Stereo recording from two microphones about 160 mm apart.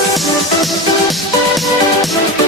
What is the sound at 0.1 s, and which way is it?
Music, centre (ahead or behind).